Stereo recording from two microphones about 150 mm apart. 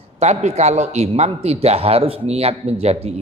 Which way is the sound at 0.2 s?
50° right (ahead or behind).